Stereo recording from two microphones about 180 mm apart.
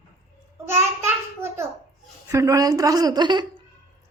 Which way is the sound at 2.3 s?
15° right (ahead or behind).